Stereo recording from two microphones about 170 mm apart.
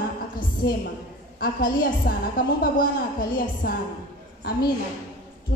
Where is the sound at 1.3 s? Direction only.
55° left (ahead or behind).